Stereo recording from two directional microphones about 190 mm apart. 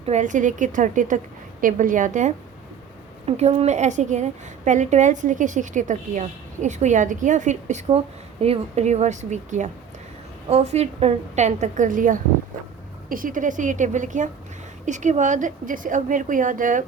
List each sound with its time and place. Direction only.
0.0 s a woman's voice: 40° right (ahead or behind)